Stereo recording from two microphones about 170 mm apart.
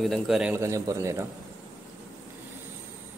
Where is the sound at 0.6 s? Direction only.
20° right (ahead or behind).